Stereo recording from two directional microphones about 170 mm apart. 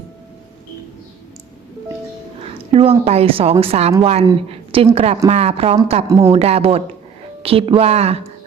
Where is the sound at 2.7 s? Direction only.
35° right (ahead or behind).